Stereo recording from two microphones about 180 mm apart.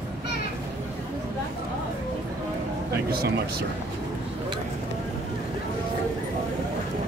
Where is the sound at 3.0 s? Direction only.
60° right (ahead or behind).